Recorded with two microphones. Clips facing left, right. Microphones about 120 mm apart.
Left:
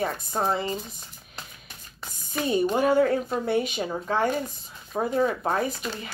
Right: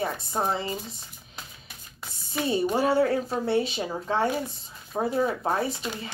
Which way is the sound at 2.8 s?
30° right (ahead or behind).